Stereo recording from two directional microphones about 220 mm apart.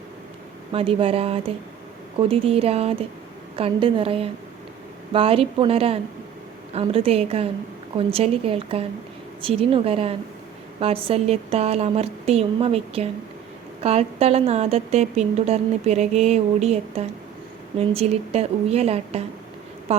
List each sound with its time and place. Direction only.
0.7 s a woman's voice: 25° right (ahead or behind)